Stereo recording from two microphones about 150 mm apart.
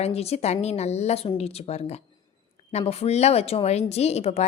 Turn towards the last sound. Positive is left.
turn(degrees=45)  # may be behind; listen again after turning